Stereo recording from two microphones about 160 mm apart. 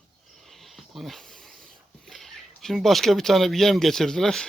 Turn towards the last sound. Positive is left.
turn(degrees=5)  # may be behind; listen again after turning